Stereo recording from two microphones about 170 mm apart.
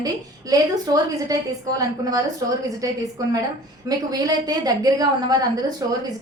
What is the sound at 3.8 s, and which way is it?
A woman's voice, 20° right (ahead or behind).